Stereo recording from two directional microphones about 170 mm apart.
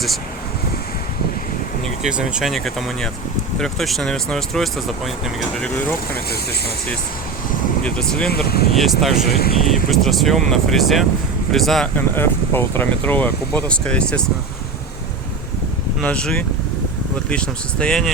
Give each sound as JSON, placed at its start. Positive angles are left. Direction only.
{"t": 1.8, "sound": "speech", "side_deg": -5}
{"t": 6.1, "sound": "speech", "side_deg": 65}
{"t": 7.9, "sound": "speech", "side_deg": 5}
{"t": 8.4, "sound": "speech", "side_deg": 65}
{"t": 8.7, "sound": "speech", "side_deg": 0}
{"t": 9.3, "sound": "speech", "side_deg": 65}
{"t": 9.6, "sound": "speech", "side_deg": 0}
{"t": 16.0, "sound": "speech", "side_deg": 5}